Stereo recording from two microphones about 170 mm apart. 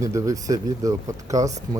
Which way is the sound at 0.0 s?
20° right (ahead or behind).